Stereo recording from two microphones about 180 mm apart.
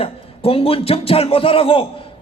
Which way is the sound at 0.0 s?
30° left (ahead or behind).